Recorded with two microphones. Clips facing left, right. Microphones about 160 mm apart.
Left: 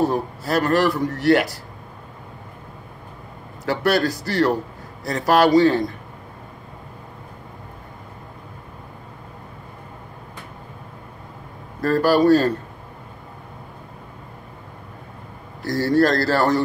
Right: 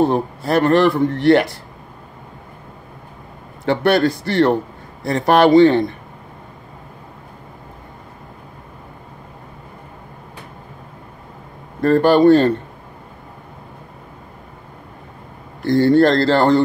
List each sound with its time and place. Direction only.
0.0 s a man's voice: 25° right (ahead or behind)
3.6 s a man's voice: 25° right (ahead or behind)
11.8 s a man's voice: 25° right (ahead or behind)
15.6 s a man's voice: 25° right (ahead or behind)